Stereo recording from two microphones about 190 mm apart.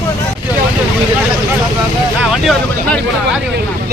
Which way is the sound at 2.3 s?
Centre (ahead or behind).